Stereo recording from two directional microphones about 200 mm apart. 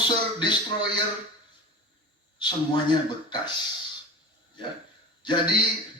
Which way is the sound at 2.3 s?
20° left (ahead or behind).